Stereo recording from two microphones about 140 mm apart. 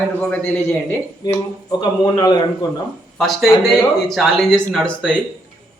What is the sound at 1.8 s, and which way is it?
A man's voice, 30° left (ahead or behind).